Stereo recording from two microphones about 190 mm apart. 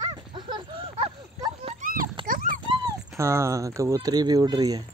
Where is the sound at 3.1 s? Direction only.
15° right (ahead or behind).